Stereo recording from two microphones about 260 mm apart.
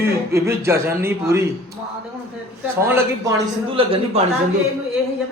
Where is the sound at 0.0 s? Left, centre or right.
Centre.